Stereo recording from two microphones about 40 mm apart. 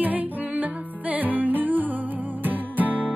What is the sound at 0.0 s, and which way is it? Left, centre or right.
Music, right.